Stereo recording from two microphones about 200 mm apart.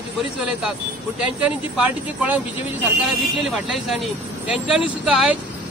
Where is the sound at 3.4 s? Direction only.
Centre (ahead or behind).